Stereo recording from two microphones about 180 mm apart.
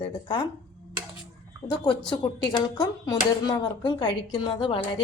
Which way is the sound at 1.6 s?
25° left (ahead or behind).